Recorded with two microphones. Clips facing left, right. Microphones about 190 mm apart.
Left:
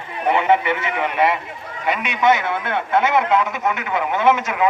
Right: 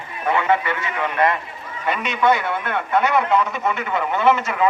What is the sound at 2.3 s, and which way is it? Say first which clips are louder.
A man's voice: left 1 dB; 20° left (ahead or behind).